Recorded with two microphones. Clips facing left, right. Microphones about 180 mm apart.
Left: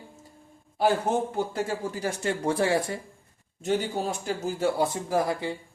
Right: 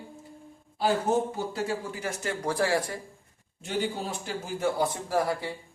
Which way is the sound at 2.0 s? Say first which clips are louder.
Left 4 dB; 30° left (ahead or behind).